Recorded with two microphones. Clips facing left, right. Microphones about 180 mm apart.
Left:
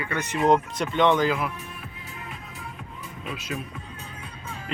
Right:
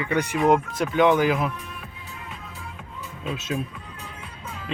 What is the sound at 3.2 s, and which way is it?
Speech, 25° right (ahead or behind).